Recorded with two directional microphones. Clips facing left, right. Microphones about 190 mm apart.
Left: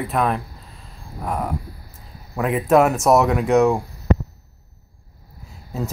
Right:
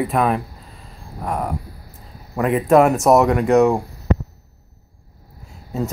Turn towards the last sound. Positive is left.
turn(degrees=0)  # may be behind; listen again after turning